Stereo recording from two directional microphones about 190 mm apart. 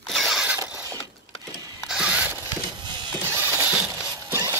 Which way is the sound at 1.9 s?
5° right (ahead or behind).